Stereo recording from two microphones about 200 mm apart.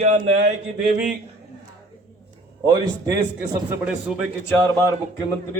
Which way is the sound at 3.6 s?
5° right (ahead or behind).